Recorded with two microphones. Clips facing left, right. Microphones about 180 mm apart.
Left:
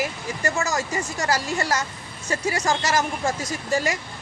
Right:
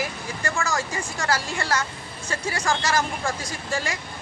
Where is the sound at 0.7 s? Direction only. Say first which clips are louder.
Left 2 dB; 20° left (ahead or behind).